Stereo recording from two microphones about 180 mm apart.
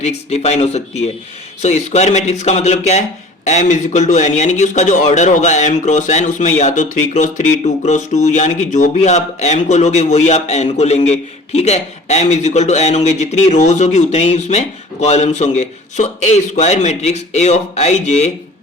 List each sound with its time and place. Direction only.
0.3 s speech: 40° left (ahead or behind)